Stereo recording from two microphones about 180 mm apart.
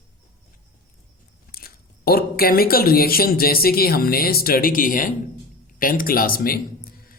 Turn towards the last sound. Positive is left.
turn(degrees=55)  # may be behind; listen again after turning